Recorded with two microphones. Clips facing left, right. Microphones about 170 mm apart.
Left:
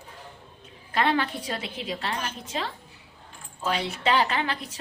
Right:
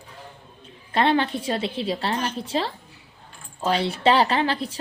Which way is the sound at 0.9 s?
25° right (ahead or behind).